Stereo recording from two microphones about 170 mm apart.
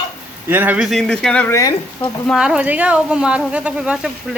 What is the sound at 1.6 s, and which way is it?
Speech, 20° left (ahead or behind).